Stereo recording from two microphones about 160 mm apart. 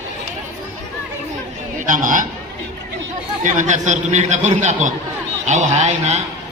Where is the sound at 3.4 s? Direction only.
55° right (ahead or behind).